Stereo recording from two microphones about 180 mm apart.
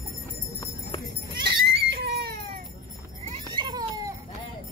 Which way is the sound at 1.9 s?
60° right (ahead or behind).